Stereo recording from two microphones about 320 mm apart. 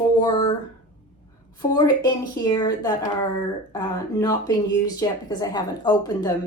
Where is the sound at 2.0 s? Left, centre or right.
Centre.